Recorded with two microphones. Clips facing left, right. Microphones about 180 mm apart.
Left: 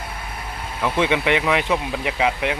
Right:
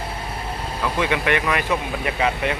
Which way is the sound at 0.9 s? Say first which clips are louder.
Left 2 dB; 20° left (ahead or behind).